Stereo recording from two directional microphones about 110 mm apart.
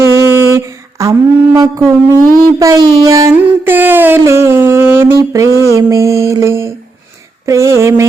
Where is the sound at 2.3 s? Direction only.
30° right (ahead or behind).